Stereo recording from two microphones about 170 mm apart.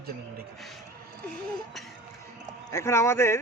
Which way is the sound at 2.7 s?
15° left (ahead or behind).